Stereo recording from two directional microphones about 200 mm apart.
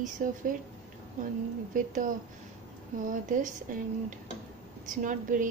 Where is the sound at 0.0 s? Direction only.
40° right (ahead or behind).